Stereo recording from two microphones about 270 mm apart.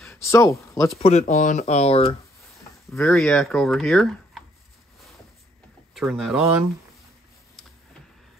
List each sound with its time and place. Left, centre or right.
0.0 s speech: centre
0.9 s speech: left
2.9 s speech: centre
5.9 s speech: centre